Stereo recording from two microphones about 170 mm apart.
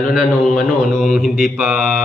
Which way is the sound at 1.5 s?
5° right (ahead or behind).